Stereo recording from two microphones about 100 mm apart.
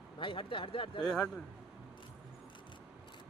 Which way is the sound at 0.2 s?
60° left (ahead or behind).